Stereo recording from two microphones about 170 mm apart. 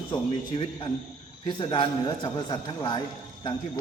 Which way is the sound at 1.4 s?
30° left (ahead or behind).